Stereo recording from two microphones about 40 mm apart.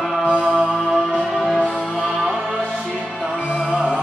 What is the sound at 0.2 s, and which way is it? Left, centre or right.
Music, right.